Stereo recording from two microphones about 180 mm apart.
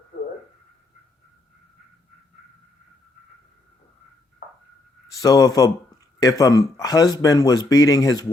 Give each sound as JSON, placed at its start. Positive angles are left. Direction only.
{"t": 5.2, "sound": "speech", "side_deg": 20}